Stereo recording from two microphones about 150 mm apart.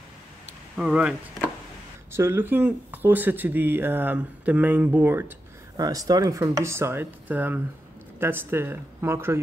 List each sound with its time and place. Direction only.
0.7 s speech: 5° right (ahead or behind)
2.1 s speech: 15° right (ahead or behind)
5.8 s speech: 25° right (ahead or behind)